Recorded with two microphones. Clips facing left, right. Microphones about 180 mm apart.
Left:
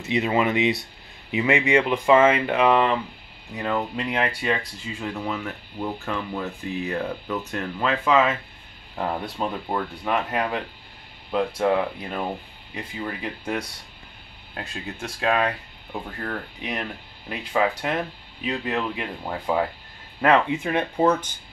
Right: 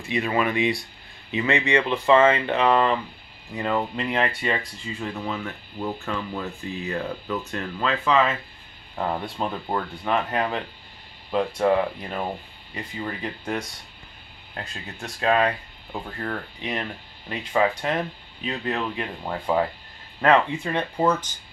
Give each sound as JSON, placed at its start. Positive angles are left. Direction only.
{"t": 0.0, "sound": "speech", "side_deg": 20}